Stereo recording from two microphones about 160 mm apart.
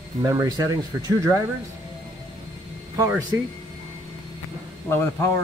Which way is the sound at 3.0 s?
20° right (ahead or behind).